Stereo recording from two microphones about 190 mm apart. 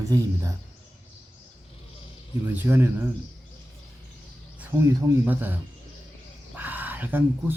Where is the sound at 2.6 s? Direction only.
10° right (ahead or behind).